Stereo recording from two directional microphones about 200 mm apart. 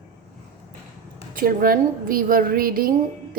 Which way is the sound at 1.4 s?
45° right (ahead or behind).